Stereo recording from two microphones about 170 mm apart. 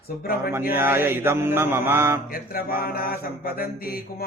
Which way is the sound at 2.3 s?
55° left (ahead or behind).